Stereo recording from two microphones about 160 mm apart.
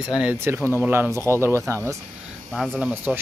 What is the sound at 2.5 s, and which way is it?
Speech, 5° left (ahead or behind).